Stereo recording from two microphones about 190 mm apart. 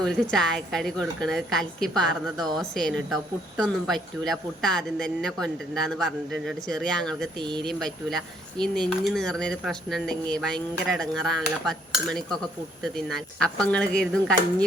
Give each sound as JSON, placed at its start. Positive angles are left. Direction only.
{"t": 0.0, "sound": "speech", "side_deg": 5}
{"t": 7.4, "sound": "speech", "side_deg": -25}
{"t": 7.7, "sound": "speech", "side_deg": 0}